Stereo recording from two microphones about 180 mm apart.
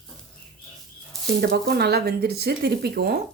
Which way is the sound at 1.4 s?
60° right (ahead or behind).